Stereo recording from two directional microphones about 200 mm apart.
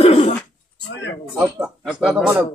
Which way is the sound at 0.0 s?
30° left (ahead or behind).